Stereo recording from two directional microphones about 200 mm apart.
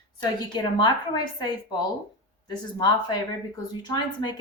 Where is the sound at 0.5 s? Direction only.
20° left (ahead or behind).